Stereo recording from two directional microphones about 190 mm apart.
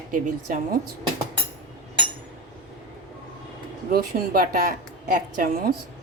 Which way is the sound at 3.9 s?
50° right (ahead or behind).